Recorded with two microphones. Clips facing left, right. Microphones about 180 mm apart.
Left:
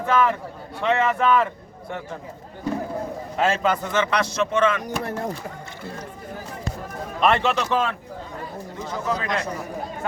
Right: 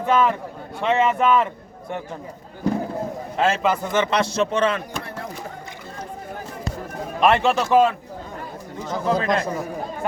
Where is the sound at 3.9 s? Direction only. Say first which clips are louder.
Right 2 dB; 20° right (ahead or behind).